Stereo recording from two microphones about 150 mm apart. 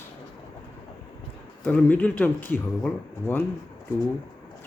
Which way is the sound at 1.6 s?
10° left (ahead or behind).